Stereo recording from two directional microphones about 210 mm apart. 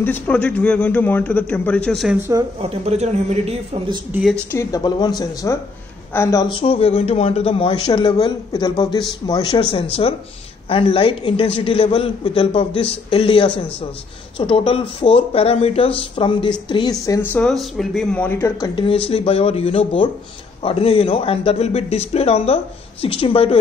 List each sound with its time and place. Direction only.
0.0 s a man's voice: 5° left (ahead or behind)
2.6 s a man's voice: 30° right (ahead or behind)
4.1 s a man's voice: centre (ahead or behind)
4.5 s speech: 15° left (ahead or behind)
18.8 s speech: 25° left (ahead or behind)